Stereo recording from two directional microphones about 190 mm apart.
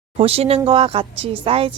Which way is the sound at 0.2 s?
30° right (ahead or behind).